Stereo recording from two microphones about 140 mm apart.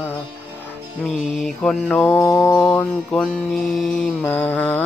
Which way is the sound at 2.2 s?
20° left (ahead or behind).